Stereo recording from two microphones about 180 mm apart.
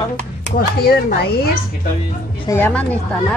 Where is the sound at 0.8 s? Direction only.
60° left (ahead or behind).